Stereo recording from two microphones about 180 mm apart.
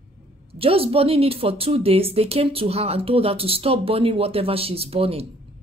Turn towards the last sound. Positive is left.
turn(degrees=-35)  # may be behind; listen again after turning